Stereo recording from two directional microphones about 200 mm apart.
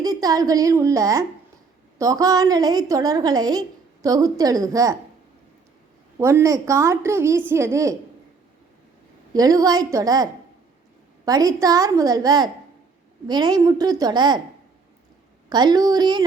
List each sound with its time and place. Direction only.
0.0 s a woman's voice: 20° right (ahead or behind)
6.1 s a woman's voice: 15° right (ahead or behind)
9.3 s a woman's voice: 20° right (ahead or behind)
11.3 s a woman's voice: 20° right (ahead or behind)
15.4 s a woman's voice: 20° right (ahead or behind)